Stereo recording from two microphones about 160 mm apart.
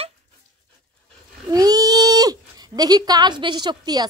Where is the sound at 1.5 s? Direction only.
25° right (ahead or behind).